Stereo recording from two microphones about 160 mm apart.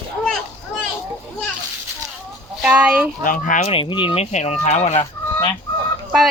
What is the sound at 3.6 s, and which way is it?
Speech, 30° left (ahead or behind).